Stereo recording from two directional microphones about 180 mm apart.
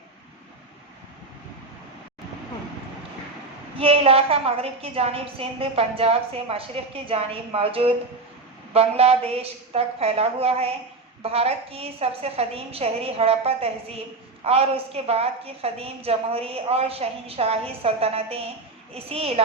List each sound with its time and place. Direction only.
3.8 s a woman's voice: 30° right (ahead or behind)